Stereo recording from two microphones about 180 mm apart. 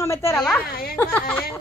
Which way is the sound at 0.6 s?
55° left (ahead or behind).